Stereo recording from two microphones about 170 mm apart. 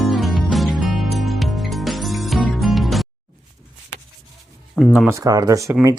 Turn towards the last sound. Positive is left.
turn(degrees=-20)  # may be behind; listen again after turning